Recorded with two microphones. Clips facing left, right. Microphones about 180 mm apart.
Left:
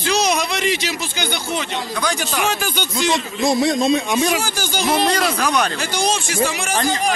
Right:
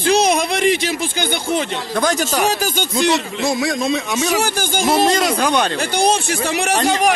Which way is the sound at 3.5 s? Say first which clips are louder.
Left 5 dB; 20° left (ahead or behind).